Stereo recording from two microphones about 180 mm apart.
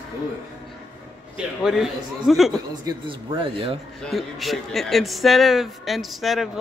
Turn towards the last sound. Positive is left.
turn(degrees=0)  # may be behind; listen again after turning